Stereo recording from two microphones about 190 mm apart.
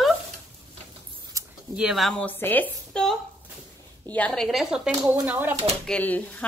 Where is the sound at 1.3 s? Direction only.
15° right (ahead or behind).